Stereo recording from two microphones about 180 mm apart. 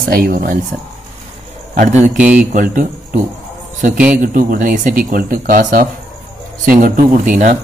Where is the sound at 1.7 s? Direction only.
40° right (ahead or behind).